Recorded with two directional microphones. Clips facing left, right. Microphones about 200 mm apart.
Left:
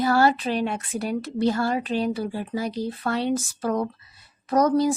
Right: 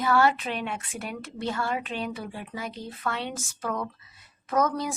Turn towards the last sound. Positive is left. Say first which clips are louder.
# left 6 dB
turn(degrees=35)  # may be behind; listen again after turning